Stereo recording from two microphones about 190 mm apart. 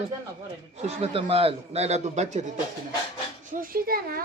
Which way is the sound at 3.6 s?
50° right (ahead or behind).